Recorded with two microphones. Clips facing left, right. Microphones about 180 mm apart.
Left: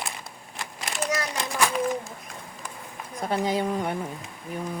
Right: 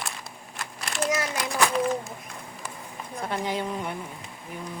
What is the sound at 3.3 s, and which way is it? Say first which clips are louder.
Speech: left 4 dB; 40° left (ahead or behind).